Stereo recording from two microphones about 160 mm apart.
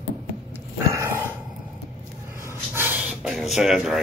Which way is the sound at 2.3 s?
15° right (ahead or behind).